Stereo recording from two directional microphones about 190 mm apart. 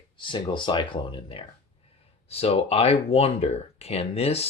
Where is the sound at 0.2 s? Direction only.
25° left (ahead or behind).